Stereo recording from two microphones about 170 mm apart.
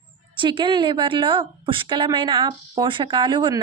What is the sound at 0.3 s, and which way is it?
A woman's voice, 30° right (ahead or behind).